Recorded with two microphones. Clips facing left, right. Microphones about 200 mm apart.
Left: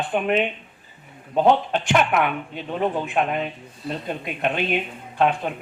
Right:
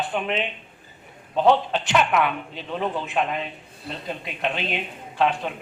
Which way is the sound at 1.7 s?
50° left (ahead or behind).